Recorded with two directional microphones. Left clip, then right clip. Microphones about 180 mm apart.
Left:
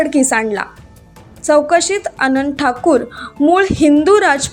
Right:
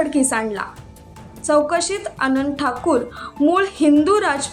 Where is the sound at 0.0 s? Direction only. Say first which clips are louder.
Left 5 dB; 25° left (ahead or behind).